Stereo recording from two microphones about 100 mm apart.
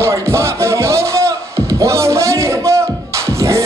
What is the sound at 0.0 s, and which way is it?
Music, 30° right (ahead or behind).